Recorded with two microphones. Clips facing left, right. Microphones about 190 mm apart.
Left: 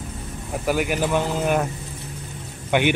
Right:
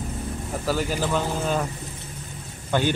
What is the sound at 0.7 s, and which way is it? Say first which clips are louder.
Speech: left 3 dB; 15° left (ahead or behind).